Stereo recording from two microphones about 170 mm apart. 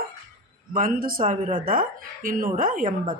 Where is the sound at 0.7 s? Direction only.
55° right (ahead or behind).